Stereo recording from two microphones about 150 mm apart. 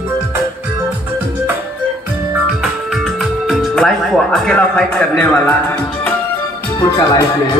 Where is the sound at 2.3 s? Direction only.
Centre (ahead or behind).